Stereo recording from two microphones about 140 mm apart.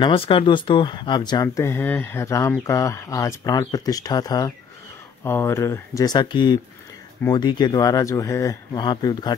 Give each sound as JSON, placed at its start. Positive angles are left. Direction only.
{"t": 0.0, "sound": "speech", "side_deg": 40}